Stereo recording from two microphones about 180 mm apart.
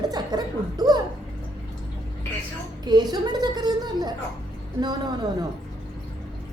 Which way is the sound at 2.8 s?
20° right (ahead or behind).